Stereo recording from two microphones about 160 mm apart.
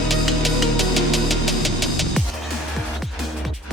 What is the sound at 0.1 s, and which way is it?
Music, centre (ahead or behind).